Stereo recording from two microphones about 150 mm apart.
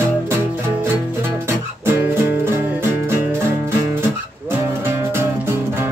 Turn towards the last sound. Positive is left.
turn(degrees=-15)  # may be behind; listen again after turning